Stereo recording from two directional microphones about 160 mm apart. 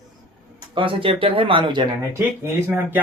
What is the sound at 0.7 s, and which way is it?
Speech, 30° right (ahead or behind).